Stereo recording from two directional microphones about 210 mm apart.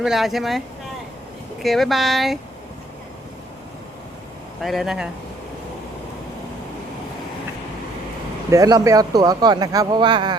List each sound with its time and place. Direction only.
0.0 s speech: centre (ahead or behind)
1.6 s speech: centre (ahead or behind)
4.6 s speech: centre (ahead or behind)
8.4 s speech: 15° right (ahead or behind)